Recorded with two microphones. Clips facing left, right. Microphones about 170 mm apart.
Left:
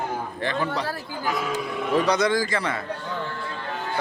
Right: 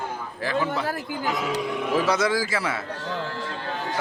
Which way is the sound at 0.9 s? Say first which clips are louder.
Right 1 dB; 20° right (ahead or behind).